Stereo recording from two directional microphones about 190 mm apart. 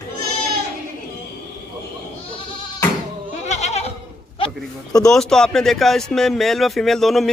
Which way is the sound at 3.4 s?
35° left (ahead or behind).